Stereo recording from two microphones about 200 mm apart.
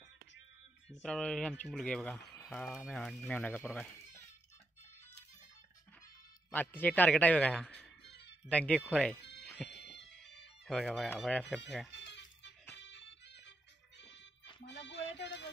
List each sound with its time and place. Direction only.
1.0 s speech: 5° left (ahead or behind)
6.5 s a man's voice: 10° left (ahead or behind)
8.0 s music: 60° left (ahead or behind)
8.5 s speech: 5° left (ahead or behind)
9.4 s music: 5° left (ahead or behind)
11.1 s speech: centre (ahead or behind)
12.8 s music: 60° left (ahead or behind)
14.7 s music: 60° left (ahead or behind)